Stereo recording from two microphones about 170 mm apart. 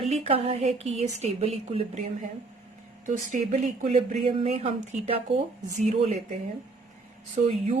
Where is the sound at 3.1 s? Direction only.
45° right (ahead or behind).